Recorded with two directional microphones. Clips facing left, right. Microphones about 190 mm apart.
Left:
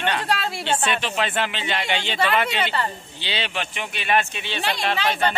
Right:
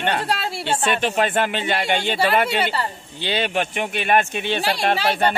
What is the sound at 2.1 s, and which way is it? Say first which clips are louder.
Speech: right 1 dB; 40° right (ahead or behind).